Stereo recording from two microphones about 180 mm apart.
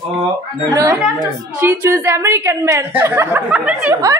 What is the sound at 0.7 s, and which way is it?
A woman's voice, 20° right (ahead or behind).